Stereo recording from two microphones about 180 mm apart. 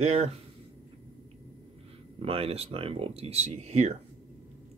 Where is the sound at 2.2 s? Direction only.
30° right (ahead or behind).